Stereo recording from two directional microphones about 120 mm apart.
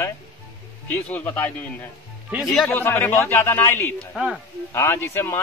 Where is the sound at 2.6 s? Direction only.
15° left (ahead or behind).